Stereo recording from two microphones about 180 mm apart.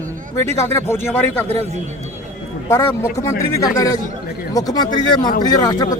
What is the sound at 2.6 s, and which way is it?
Speech, 15° left (ahead or behind).